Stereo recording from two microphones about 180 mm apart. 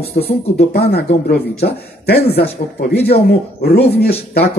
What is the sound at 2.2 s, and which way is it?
Speech, 35° left (ahead or behind).